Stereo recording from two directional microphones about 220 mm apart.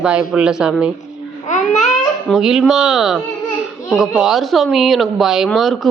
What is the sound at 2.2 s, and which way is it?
Speech, centre (ahead or behind).